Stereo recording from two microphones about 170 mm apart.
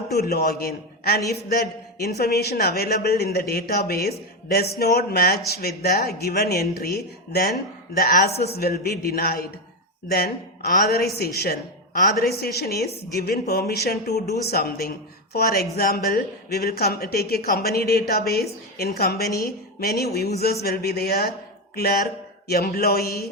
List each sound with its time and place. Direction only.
0.1 s a man's voice: 70° left (ahead or behind)